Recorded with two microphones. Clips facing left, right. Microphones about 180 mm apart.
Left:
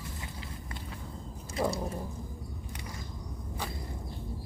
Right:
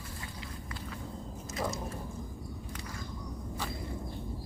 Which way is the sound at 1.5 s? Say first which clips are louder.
Left 5 dB; 30° left (ahead or behind).